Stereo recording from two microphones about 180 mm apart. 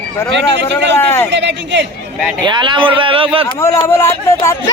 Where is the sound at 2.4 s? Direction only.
25° right (ahead or behind).